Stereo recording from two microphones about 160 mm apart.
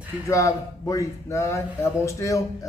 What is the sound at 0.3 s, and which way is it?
A man's voice, 20° left (ahead or behind).